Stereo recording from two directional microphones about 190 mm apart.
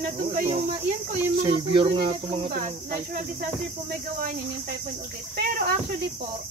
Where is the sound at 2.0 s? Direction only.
50° right (ahead or behind).